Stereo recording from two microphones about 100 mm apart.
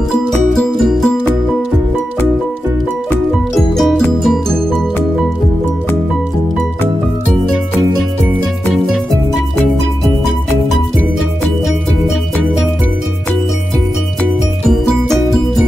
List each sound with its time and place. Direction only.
0.5 s music: centre (ahead or behind)
3.7 s music: 5° left (ahead or behind)
14.7 s music: centre (ahead or behind)